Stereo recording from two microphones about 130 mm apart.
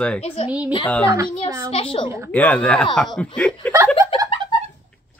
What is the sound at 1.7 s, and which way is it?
Speech, 45° left (ahead or behind).